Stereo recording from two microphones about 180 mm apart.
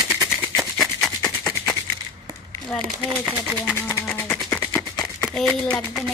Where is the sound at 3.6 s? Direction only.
10° left (ahead or behind).